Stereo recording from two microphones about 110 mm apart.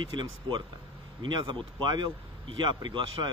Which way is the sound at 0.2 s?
45° right (ahead or behind).